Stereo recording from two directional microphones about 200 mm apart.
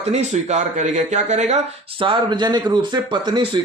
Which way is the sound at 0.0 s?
35° right (ahead or behind).